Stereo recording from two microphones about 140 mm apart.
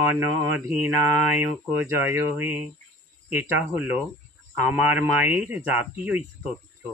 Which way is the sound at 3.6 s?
10° right (ahead or behind).